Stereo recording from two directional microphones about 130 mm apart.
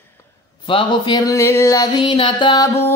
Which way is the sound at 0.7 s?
35° left (ahead or behind).